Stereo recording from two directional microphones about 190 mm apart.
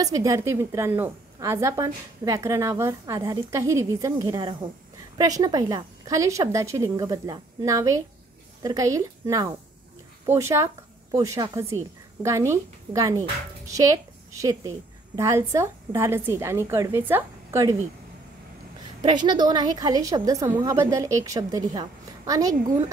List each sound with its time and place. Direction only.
0.0 s a woman's voice: 20° right (ahead or behind)
18.9 s a woman's voice: 25° right (ahead or behind)